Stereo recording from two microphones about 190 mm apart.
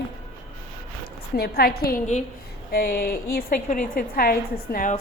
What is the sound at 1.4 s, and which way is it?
A woman's voice, 55° left (ahead or behind).